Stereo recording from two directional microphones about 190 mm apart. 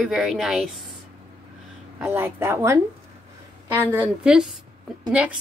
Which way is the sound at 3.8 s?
5° right (ahead or behind).